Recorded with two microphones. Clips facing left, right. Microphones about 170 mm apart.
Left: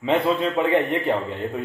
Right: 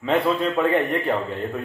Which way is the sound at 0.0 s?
20° left (ahead or behind).